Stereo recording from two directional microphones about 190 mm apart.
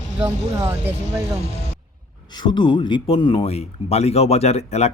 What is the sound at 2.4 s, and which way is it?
Speech, 25° left (ahead or behind).